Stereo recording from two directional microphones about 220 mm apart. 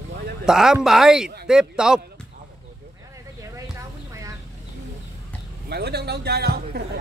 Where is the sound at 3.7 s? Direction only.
15° right (ahead or behind).